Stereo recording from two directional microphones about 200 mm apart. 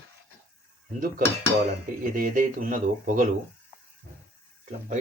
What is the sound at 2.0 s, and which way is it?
Speech, 45° right (ahead or behind).